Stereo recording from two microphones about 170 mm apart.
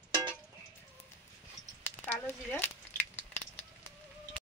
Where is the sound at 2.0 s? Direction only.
10° left (ahead or behind).